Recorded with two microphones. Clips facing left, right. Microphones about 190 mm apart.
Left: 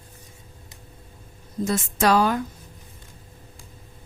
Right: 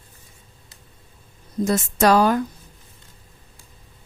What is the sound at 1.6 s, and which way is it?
Speech, 45° right (ahead or behind).